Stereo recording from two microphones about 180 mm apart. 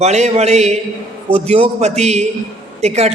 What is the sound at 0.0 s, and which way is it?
Speech, 35° right (ahead or behind).